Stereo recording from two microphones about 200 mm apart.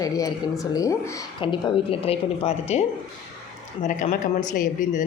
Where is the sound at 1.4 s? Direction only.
25° left (ahead or behind).